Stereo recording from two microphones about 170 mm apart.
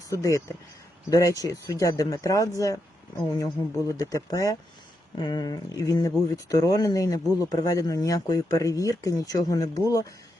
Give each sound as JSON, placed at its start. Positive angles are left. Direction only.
{"t": 0.1, "sound": "speech", "side_deg": 20}